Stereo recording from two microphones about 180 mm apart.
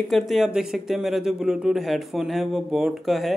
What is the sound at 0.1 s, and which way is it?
Speech, centre (ahead or behind).